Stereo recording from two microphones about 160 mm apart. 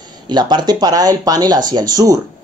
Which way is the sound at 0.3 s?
25° right (ahead or behind).